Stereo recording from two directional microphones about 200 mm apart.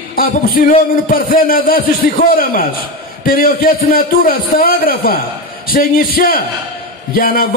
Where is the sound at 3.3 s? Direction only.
45° left (ahead or behind).